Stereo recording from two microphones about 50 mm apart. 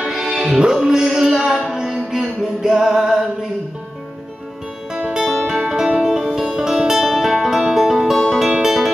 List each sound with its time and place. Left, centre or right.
0.1 s music: centre
4.9 s music: centre
5.2 s music: centre
5.6 s music: centre